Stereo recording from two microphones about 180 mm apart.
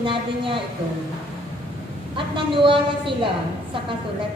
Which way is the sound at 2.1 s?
30° right (ahead or behind).